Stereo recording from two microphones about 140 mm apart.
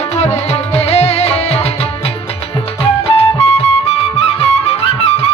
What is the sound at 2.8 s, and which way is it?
Music, 45° left (ahead or behind).